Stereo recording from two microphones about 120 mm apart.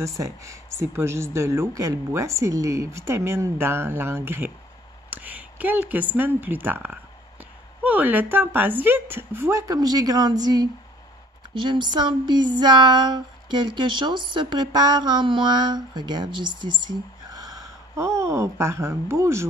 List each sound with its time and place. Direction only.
0.0 s a woman's voice: 25° right (ahead or behind)